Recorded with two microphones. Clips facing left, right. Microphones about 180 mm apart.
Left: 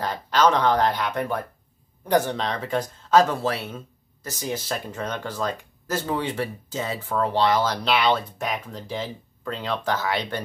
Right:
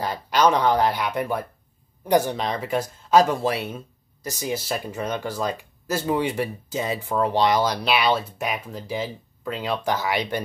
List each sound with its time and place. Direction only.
0.0 s speech: 10° right (ahead or behind)